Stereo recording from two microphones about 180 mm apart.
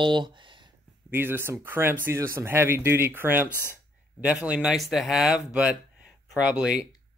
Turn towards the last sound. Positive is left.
turn(degrees=-5)  # may be behind; listen again after turning